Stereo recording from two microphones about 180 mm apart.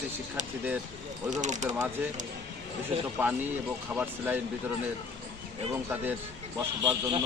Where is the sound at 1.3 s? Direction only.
40° right (ahead or behind).